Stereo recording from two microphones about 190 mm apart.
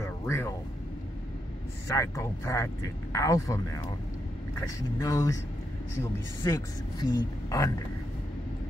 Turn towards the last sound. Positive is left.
turn(degrees=20)  # may be behind; listen again after turning